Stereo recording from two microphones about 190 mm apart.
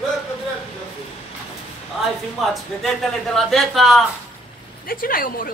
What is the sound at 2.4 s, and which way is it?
Speech, centre (ahead or behind).